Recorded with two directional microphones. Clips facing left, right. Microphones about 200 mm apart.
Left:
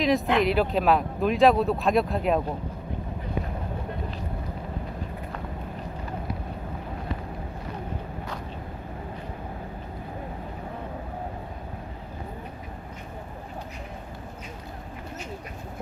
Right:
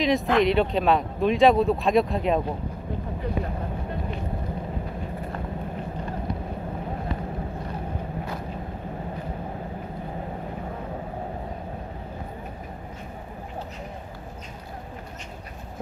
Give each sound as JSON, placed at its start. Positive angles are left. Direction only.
{"t": 0.0, "sound": "speech", "side_deg": 0}